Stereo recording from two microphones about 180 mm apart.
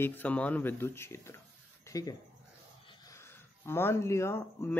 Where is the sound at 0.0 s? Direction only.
10° left (ahead or behind).